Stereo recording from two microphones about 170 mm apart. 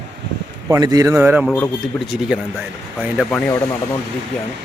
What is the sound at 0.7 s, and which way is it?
Speech, 20° right (ahead or behind).